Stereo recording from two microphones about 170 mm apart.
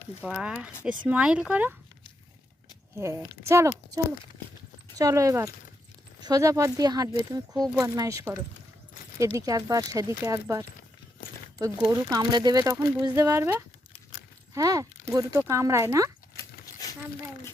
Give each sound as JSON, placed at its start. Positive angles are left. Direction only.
{"t": 0.2, "sound": "speech", "side_deg": -5}
{"t": 3.0, "sound": "speech", "side_deg": -15}
{"t": 4.9, "sound": "speech", "side_deg": -20}